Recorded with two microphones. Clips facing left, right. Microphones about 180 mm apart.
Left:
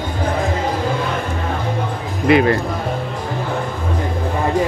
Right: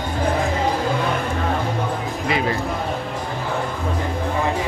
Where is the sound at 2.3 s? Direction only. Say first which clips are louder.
Left 10 dB; 65° left (ahead or behind).